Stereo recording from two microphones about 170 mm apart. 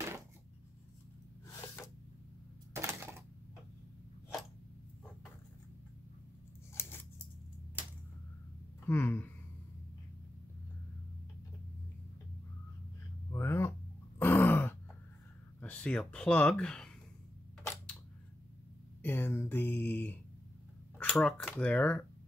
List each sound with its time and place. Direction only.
2.7 s a sound: 15° right (ahead or behind)
6.7 s scissors: 15° left (ahead or behind)
8.8 s speech: 10° left (ahead or behind)
13.3 s grunt: 15° left (ahead or behind)
15.6 s speech: 10° left (ahead or behind)
19.0 s speech: 10° left (ahead or behind)